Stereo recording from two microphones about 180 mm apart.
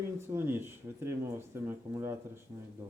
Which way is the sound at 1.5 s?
15° right (ahead or behind).